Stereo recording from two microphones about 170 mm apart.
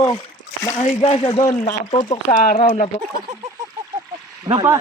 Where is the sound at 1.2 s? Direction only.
20° left (ahead or behind).